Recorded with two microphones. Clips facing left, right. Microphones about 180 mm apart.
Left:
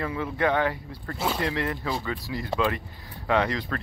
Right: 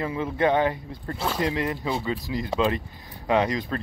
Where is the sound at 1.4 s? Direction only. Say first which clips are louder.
Right 2 dB; 20° right (ahead or behind).